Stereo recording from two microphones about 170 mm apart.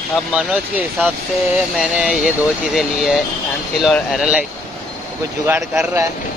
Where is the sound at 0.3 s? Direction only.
5° right (ahead or behind).